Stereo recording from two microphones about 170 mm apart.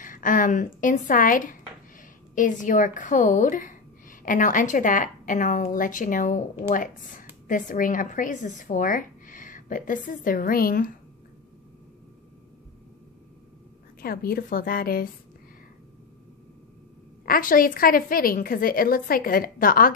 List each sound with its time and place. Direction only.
0.0 s speech: 50° left (ahead or behind)
14.0 s a woman's voice: 60° left (ahead or behind)
17.3 s a woman's voice: 55° left (ahead or behind)